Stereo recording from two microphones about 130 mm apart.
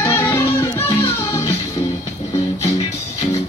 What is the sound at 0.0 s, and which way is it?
Music, 20° left (ahead or behind).